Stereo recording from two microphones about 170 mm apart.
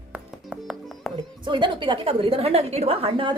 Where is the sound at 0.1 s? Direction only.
5° right (ahead or behind).